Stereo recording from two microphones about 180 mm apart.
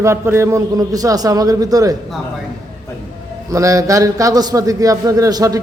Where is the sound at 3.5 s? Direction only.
20° right (ahead or behind).